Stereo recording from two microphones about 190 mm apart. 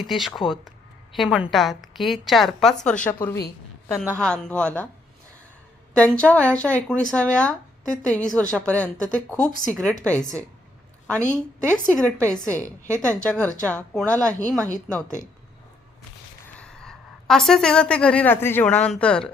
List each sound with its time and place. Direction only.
0.0 s a woman's voice: centre (ahead or behind)
5.9 s a woman's voice: 5° left (ahead or behind)
12.6 s a woman's voice: 15° right (ahead or behind)
13.2 s a woman's voice: 5° left (ahead or behind)
15.0 s speech: 40° left (ahead or behind)
16.6 s a woman's voice: 5° left (ahead or behind)